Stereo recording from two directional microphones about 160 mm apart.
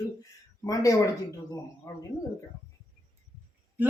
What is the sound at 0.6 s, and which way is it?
Speech, 20° left (ahead or behind).